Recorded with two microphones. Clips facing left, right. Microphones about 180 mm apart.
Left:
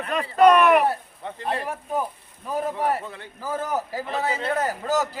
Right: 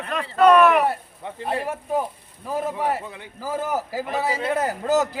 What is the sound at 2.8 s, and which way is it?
A man's voice, 10° right (ahead or behind).